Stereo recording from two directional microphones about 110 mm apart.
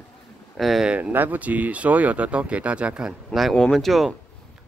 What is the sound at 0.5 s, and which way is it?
Speech, centre (ahead or behind).